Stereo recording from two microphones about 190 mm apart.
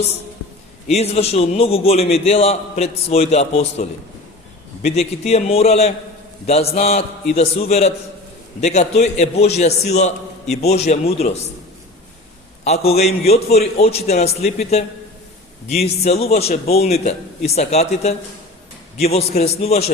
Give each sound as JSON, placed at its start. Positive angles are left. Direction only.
{"t": 0.9, "sound": "a man's voice", "side_deg": 35}
{"t": 12.6, "sound": "a man's voice", "side_deg": 35}
{"t": 19.4, "sound": "a man's voice", "side_deg": 35}